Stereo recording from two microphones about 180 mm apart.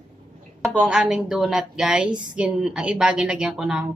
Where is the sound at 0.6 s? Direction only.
Centre (ahead or behind).